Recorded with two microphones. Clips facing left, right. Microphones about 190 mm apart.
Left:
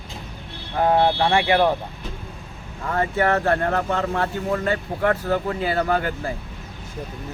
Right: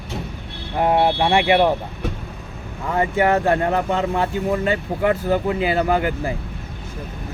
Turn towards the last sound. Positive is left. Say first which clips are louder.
# right 3 dB
turn(degrees=-15)  # may be behind; listen again after turning